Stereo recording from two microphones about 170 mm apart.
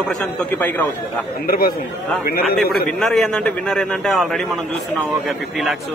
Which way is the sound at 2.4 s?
Centre (ahead or behind).